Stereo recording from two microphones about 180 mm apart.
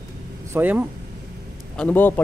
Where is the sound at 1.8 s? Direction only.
10° left (ahead or behind).